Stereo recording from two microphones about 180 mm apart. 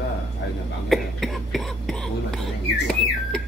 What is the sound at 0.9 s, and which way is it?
Speech, centre (ahead or behind).